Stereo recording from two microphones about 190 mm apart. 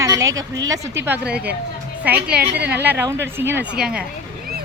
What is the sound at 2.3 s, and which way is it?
Speech, 60° right (ahead or behind).